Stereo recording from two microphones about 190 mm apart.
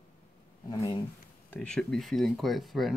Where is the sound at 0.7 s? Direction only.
15° left (ahead or behind).